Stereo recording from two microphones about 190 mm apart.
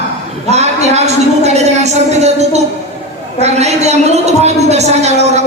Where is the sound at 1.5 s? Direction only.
35° right (ahead or behind).